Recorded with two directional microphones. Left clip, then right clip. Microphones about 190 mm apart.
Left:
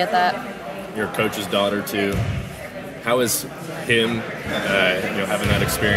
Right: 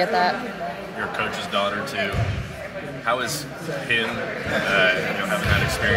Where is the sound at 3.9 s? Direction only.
60° left (ahead or behind).